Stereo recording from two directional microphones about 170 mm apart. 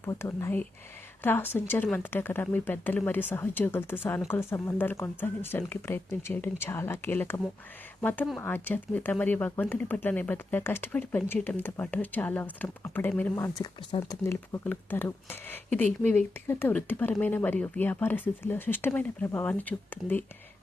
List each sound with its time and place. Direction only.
0.0 s speech: 15° left (ahead or behind)